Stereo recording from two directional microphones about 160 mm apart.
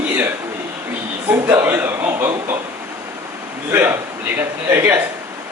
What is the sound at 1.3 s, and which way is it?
Speech, 15° right (ahead or behind).